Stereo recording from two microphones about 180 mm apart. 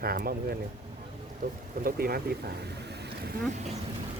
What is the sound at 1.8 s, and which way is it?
Speech, 55° right (ahead or behind).